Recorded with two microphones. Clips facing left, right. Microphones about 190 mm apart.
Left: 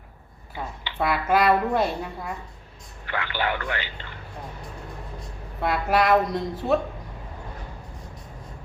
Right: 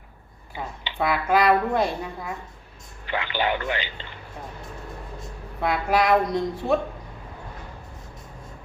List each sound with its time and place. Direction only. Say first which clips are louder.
0.9 s speech: even; centre (ahead or behind)
3.1 s speech: right 2 dB; 20° right (ahead or behind)
5.5 s speech: even; centre (ahead or behind)